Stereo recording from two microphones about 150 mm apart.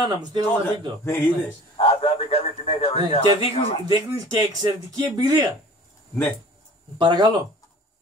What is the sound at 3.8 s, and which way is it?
A man's voice, 25° right (ahead or behind).